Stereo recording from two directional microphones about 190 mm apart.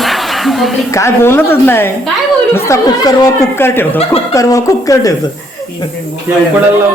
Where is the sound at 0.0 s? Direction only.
Centre (ahead or behind).